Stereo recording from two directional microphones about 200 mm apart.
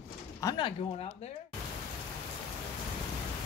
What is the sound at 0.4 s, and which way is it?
Speech, 20° left (ahead or behind).